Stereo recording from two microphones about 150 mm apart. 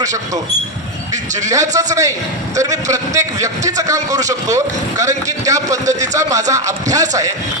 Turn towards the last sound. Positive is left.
turn(degrees=-25)  # may be behind; listen again after turning